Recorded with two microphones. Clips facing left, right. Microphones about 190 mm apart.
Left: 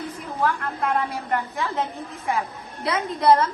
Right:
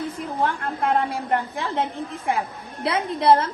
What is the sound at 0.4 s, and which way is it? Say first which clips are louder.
A woman's voice: even; 30° right (ahead or behind).